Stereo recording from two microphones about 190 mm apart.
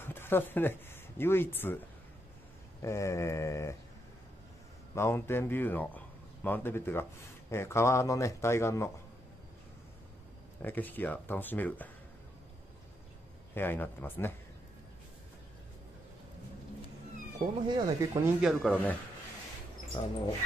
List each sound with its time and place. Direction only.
0.0 s speech: 10° left (ahead or behind)
2.8 s a man's voice: 15° left (ahead or behind)
4.9 s a man's voice: 15° left (ahead or behind)
10.6 s a man's voice: 10° left (ahead or behind)
13.6 s a man's voice: 10° left (ahead or behind)
17.6 s speech: 15° right (ahead or behind)
18.4 s speech: centre (ahead or behind)
20.0 s speech: 25° left (ahead or behind)